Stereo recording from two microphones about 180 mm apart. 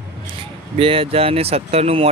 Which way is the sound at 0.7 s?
30° right (ahead or behind).